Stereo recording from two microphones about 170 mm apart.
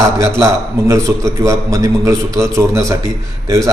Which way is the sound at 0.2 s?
20° right (ahead or behind).